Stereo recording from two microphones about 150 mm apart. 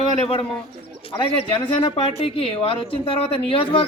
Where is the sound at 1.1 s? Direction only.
35° left (ahead or behind).